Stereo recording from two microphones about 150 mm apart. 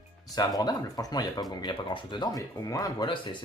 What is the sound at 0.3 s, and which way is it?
Speech, 25° left (ahead or behind).